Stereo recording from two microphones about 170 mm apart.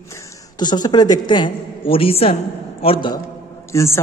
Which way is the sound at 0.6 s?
25° left (ahead or behind).